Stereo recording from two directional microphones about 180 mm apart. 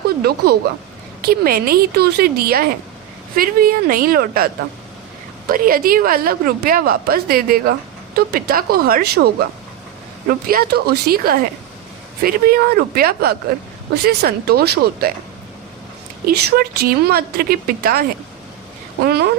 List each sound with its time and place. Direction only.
0.2 s a woman's voice: 60° right (ahead or behind)
16.2 s a woman's voice: 60° right (ahead or behind)
19.0 s a woman's voice: 60° right (ahead or behind)